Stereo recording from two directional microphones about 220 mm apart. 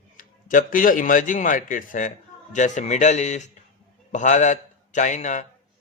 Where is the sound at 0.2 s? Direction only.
40° left (ahead or behind).